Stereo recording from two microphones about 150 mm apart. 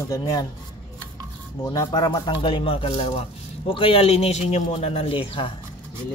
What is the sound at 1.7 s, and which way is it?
Speech, 30° left (ahead or behind).